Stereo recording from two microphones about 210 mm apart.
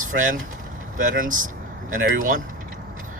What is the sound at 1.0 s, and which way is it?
Speech, 40° right (ahead or behind).